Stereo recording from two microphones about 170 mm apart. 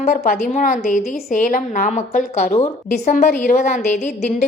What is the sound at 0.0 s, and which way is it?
A woman's voice, 50° left (ahead or behind).